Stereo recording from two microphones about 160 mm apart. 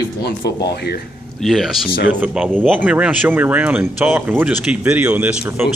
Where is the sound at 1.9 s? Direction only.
60° left (ahead or behind).